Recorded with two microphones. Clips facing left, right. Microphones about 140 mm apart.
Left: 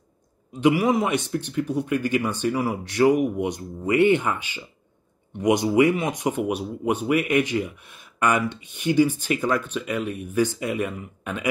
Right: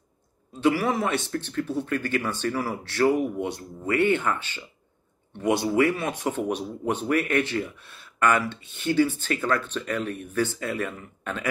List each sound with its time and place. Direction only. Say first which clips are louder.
0.5 s speech: left 3 dB; 15° left (ahead or behind)